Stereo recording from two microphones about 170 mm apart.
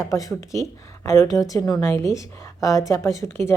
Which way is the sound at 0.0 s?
20° left (ahead or behind).